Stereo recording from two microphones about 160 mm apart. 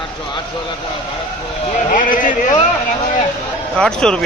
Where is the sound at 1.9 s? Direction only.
55° left (ahead or behind).